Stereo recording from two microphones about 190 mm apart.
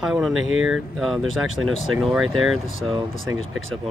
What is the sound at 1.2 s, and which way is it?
Speech, 90° right.